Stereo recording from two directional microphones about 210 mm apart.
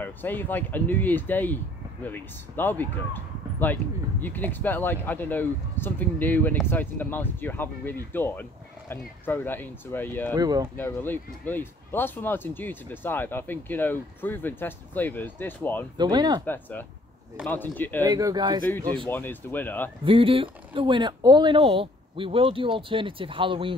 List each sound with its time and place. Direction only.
0.0 s speech: 10° left (ahead or behind)
10.3 s speech: 20° right (ahead or behind)
10.8 s speech: 10° left (ahead or behind)
16.0 s speech: 20° right (ahead or behind)
16.4 s speech: 10° left (ahead or behind)
18.0 s speech: 15° right (ahead or behind)
19.0 s speech: 10° left (ahead or behind)
20.1 s speech: 25° right (ahead or behind)